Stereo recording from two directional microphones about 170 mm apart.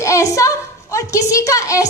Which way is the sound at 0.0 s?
20° left (ahead or behind).